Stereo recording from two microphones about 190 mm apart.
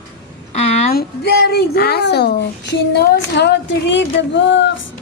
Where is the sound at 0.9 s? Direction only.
55° left (ahead or behind); by 4.8 s 70° left (ahead or behind).